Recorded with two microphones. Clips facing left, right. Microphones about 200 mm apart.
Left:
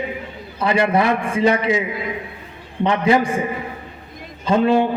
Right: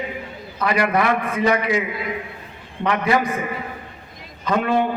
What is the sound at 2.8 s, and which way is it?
Speech, 25° left (ahead or behind).